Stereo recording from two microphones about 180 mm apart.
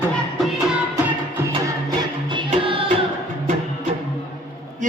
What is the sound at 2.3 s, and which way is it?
Music, 30° right (ahead or behind).